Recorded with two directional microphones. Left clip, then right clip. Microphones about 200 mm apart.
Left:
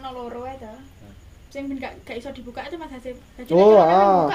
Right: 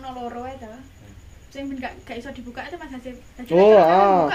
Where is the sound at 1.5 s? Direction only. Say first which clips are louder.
Even; 35° left (ahead or behind).